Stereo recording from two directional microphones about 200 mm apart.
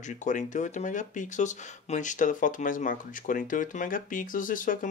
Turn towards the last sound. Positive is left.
turn(degrees=40)  # may be behind; listen again after turning